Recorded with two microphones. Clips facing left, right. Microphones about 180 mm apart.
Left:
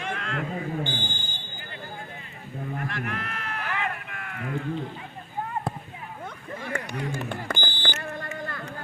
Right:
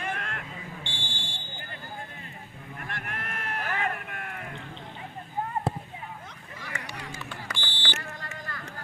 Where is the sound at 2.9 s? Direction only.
50° right (ahead or behind).